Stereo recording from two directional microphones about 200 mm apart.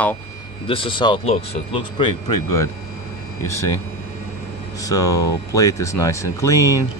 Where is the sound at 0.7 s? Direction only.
25° left (ahead or behind).